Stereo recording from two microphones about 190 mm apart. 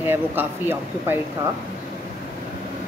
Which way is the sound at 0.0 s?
10° right (ahead or behind).